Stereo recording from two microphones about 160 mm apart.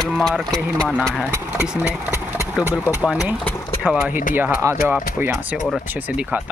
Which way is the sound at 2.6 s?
10° right (ahead or behind).